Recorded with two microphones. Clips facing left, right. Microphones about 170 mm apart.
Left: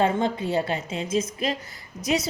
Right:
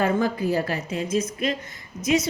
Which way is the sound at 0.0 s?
25° left (ahead or behind).